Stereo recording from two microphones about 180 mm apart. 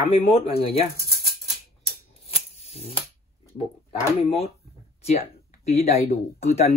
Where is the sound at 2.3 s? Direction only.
35° left (ahead or behind).